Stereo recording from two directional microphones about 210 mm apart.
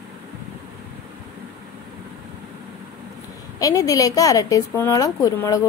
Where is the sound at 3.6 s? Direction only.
15° left (ahead or behind).